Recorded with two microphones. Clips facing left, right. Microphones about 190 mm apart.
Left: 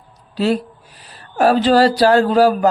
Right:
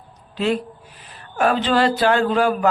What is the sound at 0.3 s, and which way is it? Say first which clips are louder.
Speech: left 3 dB; 35° left (ahead or behind).